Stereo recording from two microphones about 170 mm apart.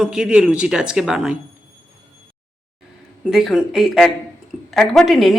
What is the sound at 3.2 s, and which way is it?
Speech, 5° right (ahead or behind).